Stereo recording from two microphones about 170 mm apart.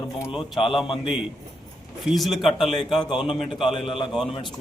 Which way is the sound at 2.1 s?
Centre (ahead or behind).